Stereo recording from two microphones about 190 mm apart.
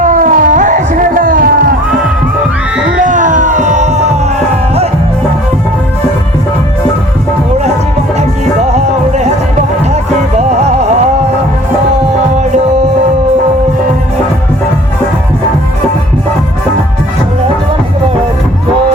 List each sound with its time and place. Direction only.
0.0 s a sound: 45° right (ahead or behind)
2.9 s music: 40° right (ahead or behind)
9.9 s music: 35° right (ahead or behind)